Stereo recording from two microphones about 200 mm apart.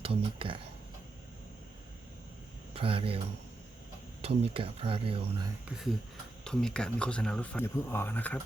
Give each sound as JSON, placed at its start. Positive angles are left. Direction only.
{"t": 0.0, "sound": "speech", "side_deg": -25}
{"t": 2.7, "sound": "speech", "side_deg": -25}
{"t": 4.2, "sound": "speech", "side_deg": -30}
{"t": 5.6, "sound": "speech", "side_deg": -5}